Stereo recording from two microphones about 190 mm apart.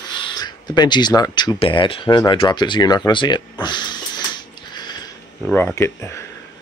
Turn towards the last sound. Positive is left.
turn(degrees=15)  # may be behind; listen again after turning